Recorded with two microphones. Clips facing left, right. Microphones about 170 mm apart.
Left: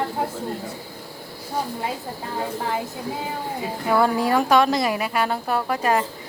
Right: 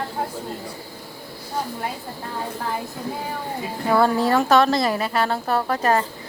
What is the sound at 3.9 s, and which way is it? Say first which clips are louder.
Speech: right 1 dB; 10° left (ahead or behind).